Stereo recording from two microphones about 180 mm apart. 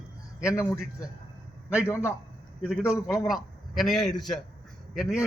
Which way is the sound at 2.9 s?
Centre (ahead or behind).